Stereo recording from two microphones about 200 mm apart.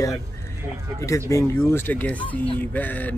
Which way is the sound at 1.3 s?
15° left (ahead or behind).